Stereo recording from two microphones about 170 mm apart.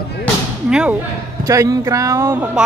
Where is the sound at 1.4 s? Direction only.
20° right (ahead or behind).